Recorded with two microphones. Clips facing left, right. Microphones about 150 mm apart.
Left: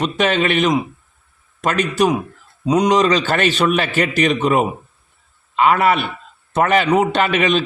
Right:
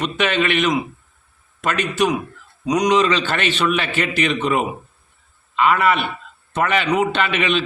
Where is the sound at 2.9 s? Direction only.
40° left (ahead or behind).